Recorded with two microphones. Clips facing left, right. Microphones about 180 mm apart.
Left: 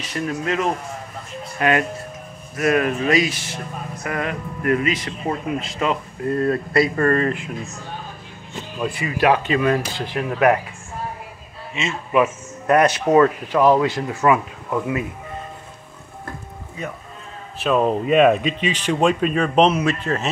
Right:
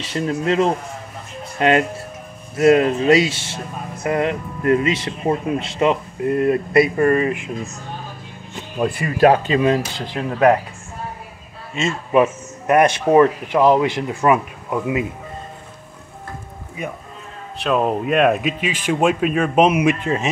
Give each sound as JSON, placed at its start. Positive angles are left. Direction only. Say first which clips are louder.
{"t": 0.0, "sound": "speech", "louder": "right 3 dB", "side_deg": -25}
{"t": 8.8, "sound": "speech", "louder": "right 4 dB", "side_deg": -50}
{"t": 9.5, "sound": "speech", "louder": "right 2 dB", "side_deg": -25}
{"t": 11.7, "sound": "speech", "louder": "right 4 dB", "side_deg": -45}
{"t": 13.1, "sound": "speech", "louder": "right 2 dB", "side_deg": -20}
{"t": 16.8, "sound": "speech", "louder": "right 2 dB", "side_deg": -10}
{"t": 17.6, "sound": "speech", "louder": "even", "side_deg": 0}